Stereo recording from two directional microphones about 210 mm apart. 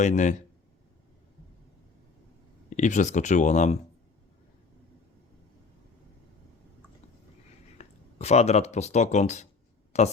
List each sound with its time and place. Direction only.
0.0 s speech: 35° left (ahead or behind)
2.7 s speech: 35° left (ahead or behind)
7.8 s speech: 30° left (ahead or behind)